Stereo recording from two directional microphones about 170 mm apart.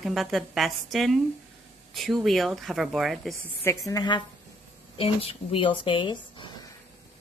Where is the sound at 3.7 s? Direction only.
20° left (ahead or behind).